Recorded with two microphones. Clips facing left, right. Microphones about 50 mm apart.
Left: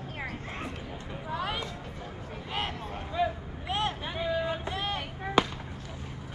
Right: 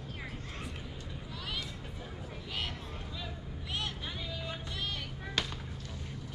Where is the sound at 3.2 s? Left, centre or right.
Left.